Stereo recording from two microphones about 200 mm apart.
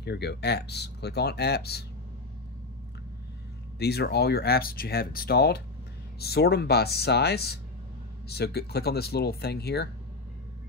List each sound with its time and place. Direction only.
0.0 s speech: 55° left (ahead or behind)
3.8 s speech: 55° left (ahead or behind)